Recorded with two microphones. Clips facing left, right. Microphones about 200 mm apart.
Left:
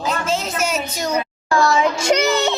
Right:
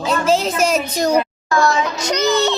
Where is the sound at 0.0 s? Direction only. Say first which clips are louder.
Right 5 dB; 35° right (ahead or behind).